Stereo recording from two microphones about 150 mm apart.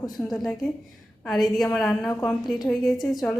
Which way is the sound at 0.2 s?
5° left (ahead or behind).